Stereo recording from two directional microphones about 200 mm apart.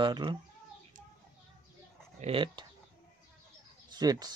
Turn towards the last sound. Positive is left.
turn(degrees=-20)  # may be behind; listen again after turning